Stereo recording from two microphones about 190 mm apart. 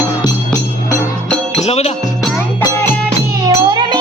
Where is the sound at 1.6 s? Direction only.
35° left (ahead or behind).